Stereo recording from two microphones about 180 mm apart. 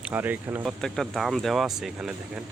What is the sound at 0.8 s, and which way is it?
Speech, centre (ahead or behind).